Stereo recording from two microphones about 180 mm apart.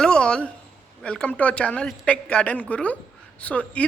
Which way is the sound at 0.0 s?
5° left (ahead or behind).